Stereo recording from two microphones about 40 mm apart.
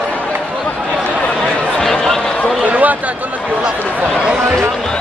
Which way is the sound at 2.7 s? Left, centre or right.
Right.